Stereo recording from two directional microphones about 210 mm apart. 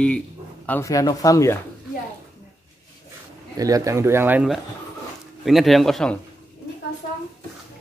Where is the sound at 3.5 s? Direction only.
15° right (ahead or behind); by 6.2 s 5° left (ahead or behind).